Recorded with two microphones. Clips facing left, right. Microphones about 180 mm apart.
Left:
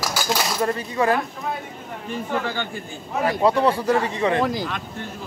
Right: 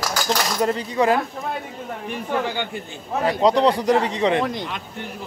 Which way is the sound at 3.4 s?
15° right (ahead or behind).